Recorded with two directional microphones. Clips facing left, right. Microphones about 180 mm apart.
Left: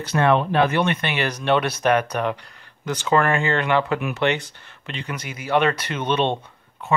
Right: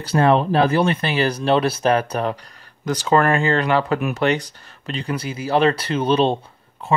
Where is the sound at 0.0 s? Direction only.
35° right (ahead or behind).